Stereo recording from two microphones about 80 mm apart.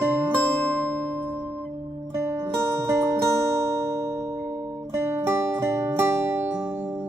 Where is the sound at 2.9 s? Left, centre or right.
Right.